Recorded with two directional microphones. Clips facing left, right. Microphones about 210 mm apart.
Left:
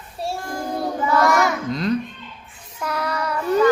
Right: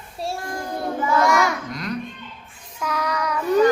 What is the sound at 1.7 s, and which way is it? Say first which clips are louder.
Babbling: left 7 dB; 25° left (ahead or behind).